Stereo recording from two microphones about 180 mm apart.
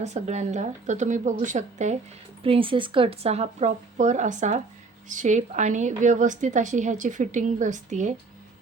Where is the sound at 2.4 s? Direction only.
30° right (ahead or behind).